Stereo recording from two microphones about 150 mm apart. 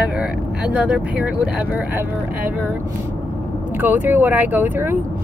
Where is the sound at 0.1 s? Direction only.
5° right (ahead or behind).